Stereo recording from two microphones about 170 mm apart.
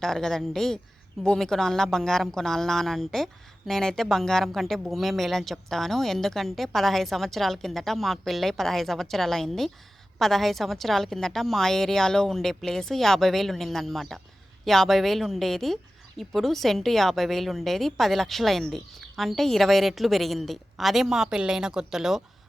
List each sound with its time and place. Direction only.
0.0 s a woman's voice: centre (ahead or behind)